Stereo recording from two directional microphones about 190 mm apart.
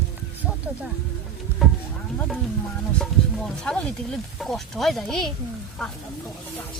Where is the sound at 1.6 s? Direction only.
Centre (ahead or behind).